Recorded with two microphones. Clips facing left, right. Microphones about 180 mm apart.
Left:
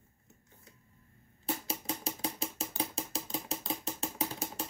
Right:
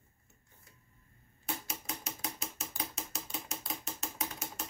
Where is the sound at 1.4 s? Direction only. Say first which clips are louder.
Left 5 dB; 30° left (ahead or behind).